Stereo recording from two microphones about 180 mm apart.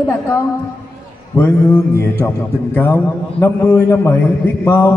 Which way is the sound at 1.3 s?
10° left (ahead or behind).